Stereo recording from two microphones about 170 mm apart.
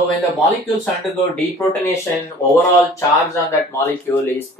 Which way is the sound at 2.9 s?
15° left (ahead or behind).